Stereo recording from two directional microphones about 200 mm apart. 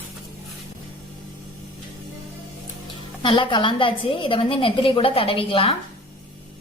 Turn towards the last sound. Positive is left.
turn(degrees=30)  # may be behind; listen again after turning